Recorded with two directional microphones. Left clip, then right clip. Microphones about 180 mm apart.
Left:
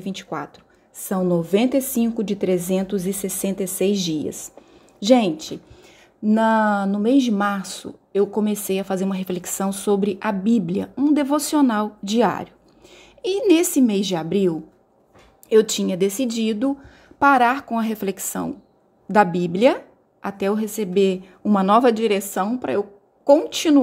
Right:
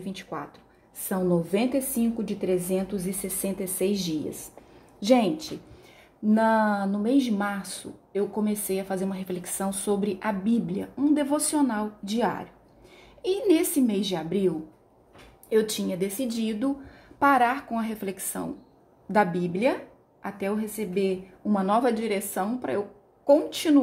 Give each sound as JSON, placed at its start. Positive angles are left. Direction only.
{"t": 0.0, "sound": "speech", "side_deg": 35}
{"t": 1.0, "sound": "speech", "side_deg": 20}
{"t": 12.9, "sound": "a woman's voice", "side_deg": 30}
{"t": 15.5, "sound": "speech", "side_deg": 35}